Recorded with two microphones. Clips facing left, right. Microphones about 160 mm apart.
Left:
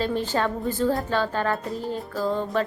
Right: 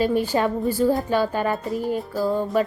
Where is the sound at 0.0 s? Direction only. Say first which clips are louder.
Right 4 dB; 10° right (ahead or behind).